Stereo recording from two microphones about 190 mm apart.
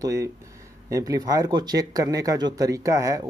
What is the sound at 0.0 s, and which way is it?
Speech, 15° right (ahead or behind).